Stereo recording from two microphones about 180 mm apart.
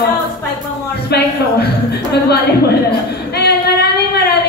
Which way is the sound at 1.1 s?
65° left (ahead or behind).